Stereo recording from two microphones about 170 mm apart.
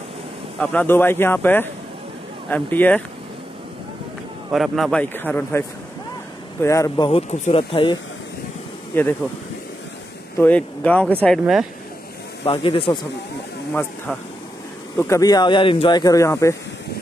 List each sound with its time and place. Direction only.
0.6 s speech: 10° left (ahead or behind)
4.5 s speech: centre (ahead or behind)
5.1 s speech: 10° left (ahead or behind)
7.1 s speech: 35° left (ahead or behind)
8.9 s speech: 10° left (ahead or behind)
10.3 s speech: 10° left (ahead or behind)
12.4 s speech: 30° left (ahead or behind)
15.0 s speech: 20° left (ahead or behind)